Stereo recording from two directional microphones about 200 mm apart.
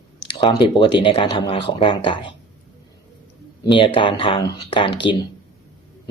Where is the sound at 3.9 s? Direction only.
25° left (ahead or behind).